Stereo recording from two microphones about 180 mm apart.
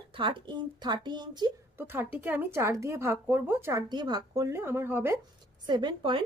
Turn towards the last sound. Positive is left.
turn(degrees=-25)  # may be behind; listen again after turning